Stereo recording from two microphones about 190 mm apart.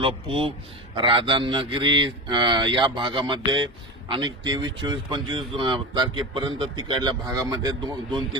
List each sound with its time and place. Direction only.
0.3 s speech: 30° right (ahead or behind)